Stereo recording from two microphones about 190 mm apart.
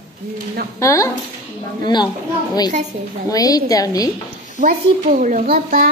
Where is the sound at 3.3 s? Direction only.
20° left (ahead or behind).